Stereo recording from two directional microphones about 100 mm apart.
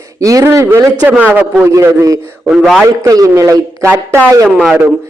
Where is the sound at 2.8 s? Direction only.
35° right (ahead or behind).